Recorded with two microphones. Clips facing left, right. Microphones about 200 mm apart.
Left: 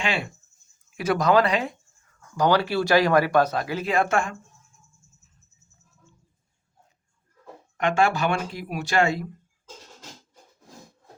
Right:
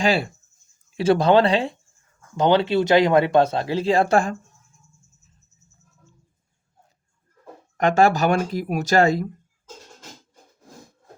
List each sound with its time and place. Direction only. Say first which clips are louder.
0.0 s speech: right 7 dB; 35° right (ahead or behind)
7.8 s speech: right 5 dB; 40° right (ahead or behind)